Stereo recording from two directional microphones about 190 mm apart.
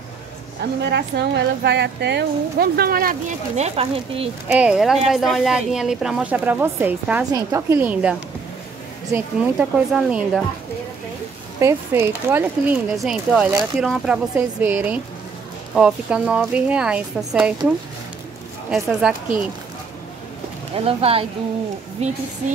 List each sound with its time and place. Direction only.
0.8 s a woman's voice: 65° right (ahead or behind); by 4.3 s 30° right (ahead or behind)
4.5 s speech: 5° right (ahead or behind)
11.6 s speech: 15° right (ahead or behind)
12.9 s speech: centre (ahead or behind)
18.7 s speech: 5° right (ahead or behind)
20.7 s speech: 30° right (ahead or behind)